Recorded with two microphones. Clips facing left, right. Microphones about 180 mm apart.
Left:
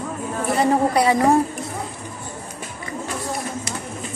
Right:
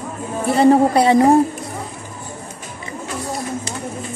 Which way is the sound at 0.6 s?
30° right (ahead or behind).